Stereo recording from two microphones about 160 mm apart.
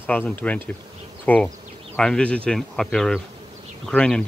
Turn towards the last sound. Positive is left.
turn(degrees=5)  # may be behind; listen again after turning